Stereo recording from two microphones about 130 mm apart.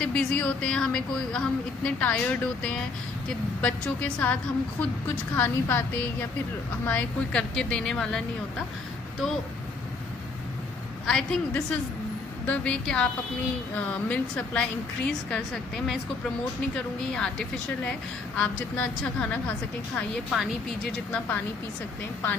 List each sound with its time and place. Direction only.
0.0 s a woman's voice: 10° left (ahead or behind)
6.9 s a woman's voice: 10° left (ahead or behind)
11.1 s a woman's voice: 5° left (ahead or behind)